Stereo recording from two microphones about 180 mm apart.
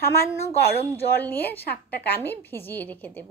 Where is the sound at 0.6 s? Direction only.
60° left (ahead or behind).